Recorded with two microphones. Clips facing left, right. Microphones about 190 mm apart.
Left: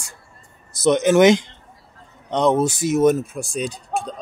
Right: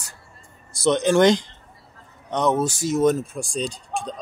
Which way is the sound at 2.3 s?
25° left (ahead or behind).